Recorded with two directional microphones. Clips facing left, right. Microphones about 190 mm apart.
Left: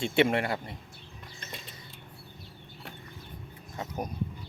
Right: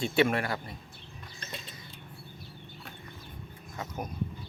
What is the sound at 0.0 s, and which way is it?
Speech, 25° left (ahead or behind).